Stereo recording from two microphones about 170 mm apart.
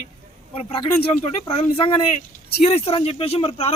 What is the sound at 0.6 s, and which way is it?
A man's voice, 30° left (ahead or behind).